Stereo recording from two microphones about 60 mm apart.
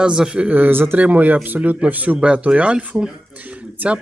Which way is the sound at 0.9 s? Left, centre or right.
Right.